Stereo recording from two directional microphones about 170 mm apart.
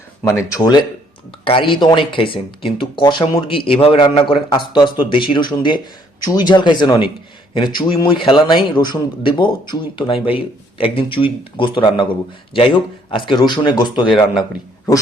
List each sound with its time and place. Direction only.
0.2 s a man's voice: 15° left (ahead or behind)